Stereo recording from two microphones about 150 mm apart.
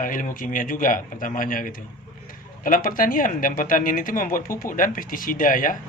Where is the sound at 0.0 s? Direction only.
65° left (ahead or behind).